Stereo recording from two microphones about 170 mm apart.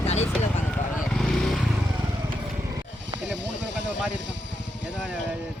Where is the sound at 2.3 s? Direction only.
25° right (ahead or behind).